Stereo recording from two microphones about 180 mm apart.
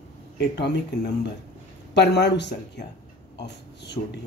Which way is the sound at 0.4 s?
70° left (ahead or behind).